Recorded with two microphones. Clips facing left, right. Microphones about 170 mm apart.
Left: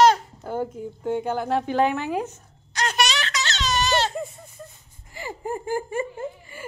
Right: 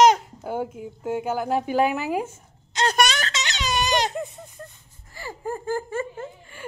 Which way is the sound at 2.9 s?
45° right (ahead or behind).